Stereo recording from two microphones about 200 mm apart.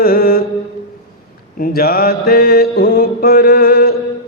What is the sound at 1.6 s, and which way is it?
Mantra, 45° left (ahead or behind).